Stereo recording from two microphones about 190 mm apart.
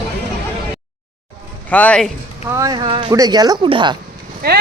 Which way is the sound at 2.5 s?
20° right (ahead or behind).